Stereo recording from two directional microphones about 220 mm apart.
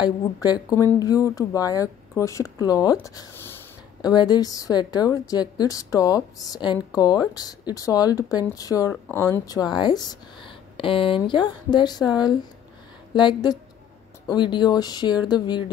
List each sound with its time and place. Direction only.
0.0 s a woman's voice: 20° left (ahead or behind)
13.1 s speech: 20° left (ahead or behind)